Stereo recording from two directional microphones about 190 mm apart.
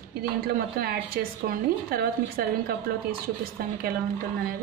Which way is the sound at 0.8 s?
50° right (ahead or behind).